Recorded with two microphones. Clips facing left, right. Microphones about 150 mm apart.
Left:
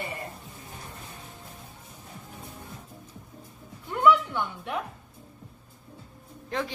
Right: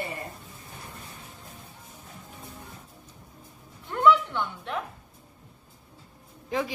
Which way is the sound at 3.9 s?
10° left (ahead or behind).